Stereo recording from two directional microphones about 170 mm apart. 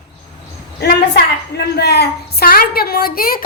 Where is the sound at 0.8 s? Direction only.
75° left (ahead or behind).